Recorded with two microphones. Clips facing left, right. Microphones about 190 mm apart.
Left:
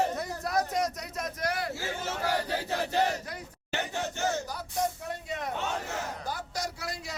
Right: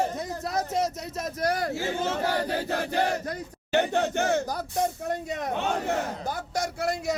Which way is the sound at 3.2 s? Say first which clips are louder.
Right 7 dB; 60° right (ahead or behind).